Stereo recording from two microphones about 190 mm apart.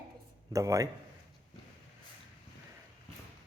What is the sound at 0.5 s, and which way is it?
Speech, 15° right (ahead or behind).